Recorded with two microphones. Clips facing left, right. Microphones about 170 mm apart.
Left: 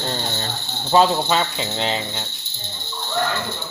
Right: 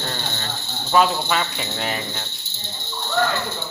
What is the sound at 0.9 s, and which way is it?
Speech, 25° left (ahead or behind).